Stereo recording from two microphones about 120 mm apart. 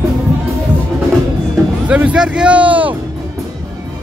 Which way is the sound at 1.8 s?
10° right (ahead or behind).